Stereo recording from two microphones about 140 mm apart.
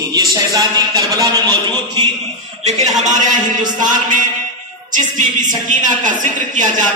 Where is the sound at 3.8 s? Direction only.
65° right (ahead or behind).